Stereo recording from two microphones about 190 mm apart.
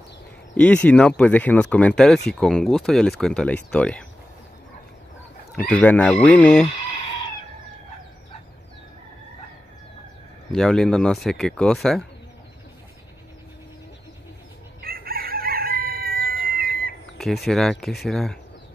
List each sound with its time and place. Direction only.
0.6 s speech: 5° left (ahead or behind)
5.5 s speech: 5° left (ahead or behind)
10.5 s speech: 5° left (ahead or behind)
14.8 s chicken: 50° right (ahead or behind)
16.4 s a sound: 50° right (ahead or behind)
17.2 s speech: centre (ahead or behind)